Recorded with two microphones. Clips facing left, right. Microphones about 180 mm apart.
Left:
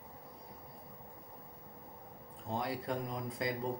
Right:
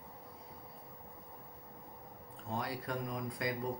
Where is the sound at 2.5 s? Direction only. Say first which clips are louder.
Left 2 dB; 25° left (ahead or behind).